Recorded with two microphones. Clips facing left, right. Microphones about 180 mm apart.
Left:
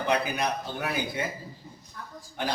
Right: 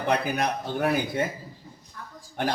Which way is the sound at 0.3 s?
45° right (ahead or behind).